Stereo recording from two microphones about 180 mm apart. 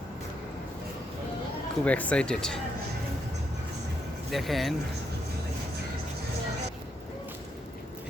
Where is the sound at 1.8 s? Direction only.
5° left (ahead or behind).